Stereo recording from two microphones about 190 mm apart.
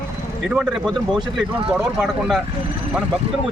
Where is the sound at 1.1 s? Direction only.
25° right (ahead or behind).